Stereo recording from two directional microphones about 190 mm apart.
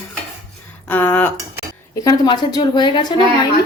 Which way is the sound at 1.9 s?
20° left (ahead or behind).